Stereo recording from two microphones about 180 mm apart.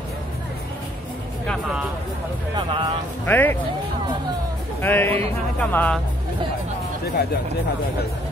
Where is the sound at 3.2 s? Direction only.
10° left (ahead or behind).